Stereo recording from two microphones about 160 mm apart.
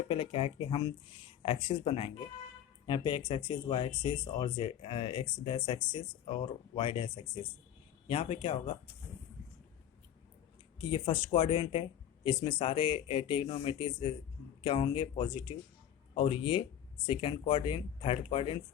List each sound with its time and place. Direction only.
0.1 s speech: 35° left (ahead or behind)
10.8 s speech: 30° left (ahead or behind)